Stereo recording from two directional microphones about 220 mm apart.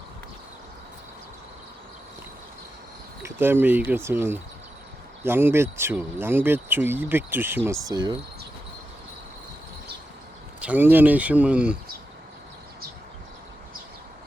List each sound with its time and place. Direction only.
3.2 s speech: 10° right (ahead or behind)
10.6 s speech: 5° right (ahead or behind)